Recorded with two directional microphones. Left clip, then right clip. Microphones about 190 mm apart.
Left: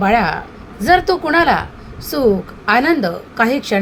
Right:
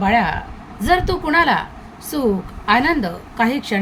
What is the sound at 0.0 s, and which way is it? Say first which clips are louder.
A woman's voice: left 2 dB; 10° left (ahead or behind).